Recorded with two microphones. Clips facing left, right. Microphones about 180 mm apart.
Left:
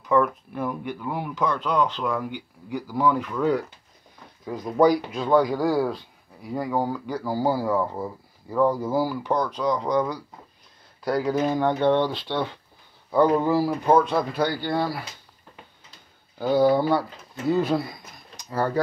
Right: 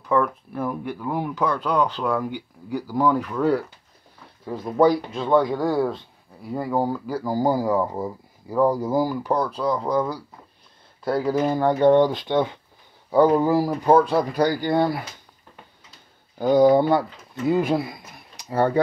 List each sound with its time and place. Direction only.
0.1 s speech: 5° left (ahead or behind)
0.7 s speech: 5° right (ahead or behind)
4.8 s speech: 25° right (ahead or behind)
5.5 s speech: centre (ahead or behind); by 14.9 s 20° right (ahead or behind)
16.3 s speech: 15° right (ahead or behind)